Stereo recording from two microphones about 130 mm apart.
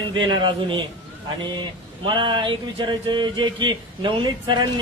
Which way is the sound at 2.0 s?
40° right (ahead or behind).